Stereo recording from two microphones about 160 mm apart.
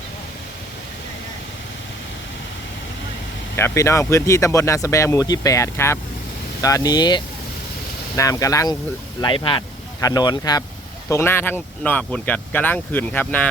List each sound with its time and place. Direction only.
3.5 s speech: 15° left (ahead or behind)
9.2 s speech: 30° left (ahead or behind); by 13.5 s 10° left (ahead or behind)